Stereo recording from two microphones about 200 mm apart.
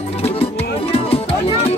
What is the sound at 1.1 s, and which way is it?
Music, 30° left (ahead or behind).